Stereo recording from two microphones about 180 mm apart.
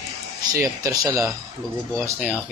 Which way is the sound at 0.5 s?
15° right (ahead or behind).